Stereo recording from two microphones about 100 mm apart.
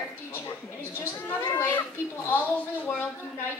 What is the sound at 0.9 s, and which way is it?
A woman's voice, 20° left (ahead or behind).